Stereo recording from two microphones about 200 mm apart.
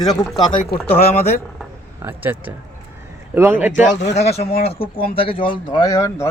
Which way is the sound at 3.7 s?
35° left (ahead or behind).